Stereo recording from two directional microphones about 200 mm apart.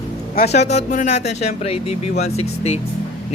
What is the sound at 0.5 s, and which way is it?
Speech, 35° left (ahead or behind).